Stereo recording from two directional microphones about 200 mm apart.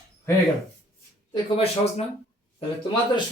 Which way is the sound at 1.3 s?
30° left (ahead or behind).